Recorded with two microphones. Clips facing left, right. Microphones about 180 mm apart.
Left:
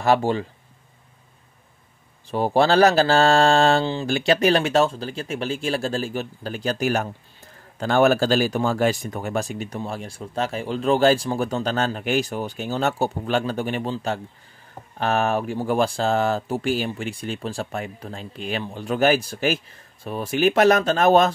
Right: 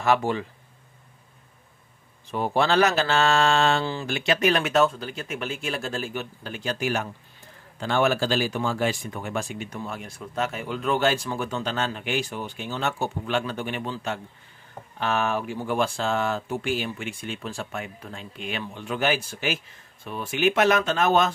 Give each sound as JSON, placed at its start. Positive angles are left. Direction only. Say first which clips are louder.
{"t": 0.0, "sound": "speech", "louder": "left 3 dB", "side_deg": 35}
{"t": 2.3, "sound": "speech", "louder": "left 4 dB", "side_deg": 35}